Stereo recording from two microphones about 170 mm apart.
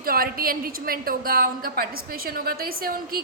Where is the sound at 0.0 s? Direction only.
60° right (ahead or behind).